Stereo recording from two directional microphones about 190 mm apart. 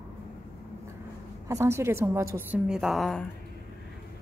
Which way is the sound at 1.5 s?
15° right (ahead or behind).